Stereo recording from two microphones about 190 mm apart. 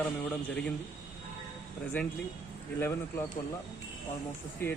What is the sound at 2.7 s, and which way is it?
Speech, 10° left (ahead or behind).